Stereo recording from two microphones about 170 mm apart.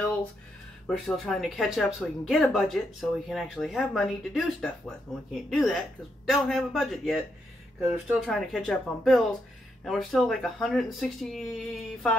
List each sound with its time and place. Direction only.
0.8 s speech: 5° left (ahead or behind)